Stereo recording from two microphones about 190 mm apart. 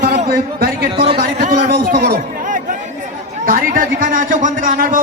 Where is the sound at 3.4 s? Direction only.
45° right (ahead or behind).